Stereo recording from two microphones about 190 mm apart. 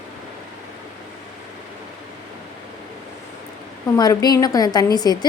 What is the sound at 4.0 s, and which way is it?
A woman's voice, 20° left (ahead or behind).